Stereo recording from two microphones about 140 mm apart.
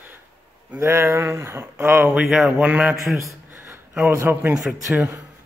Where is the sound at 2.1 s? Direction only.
5° right (ahead or behind).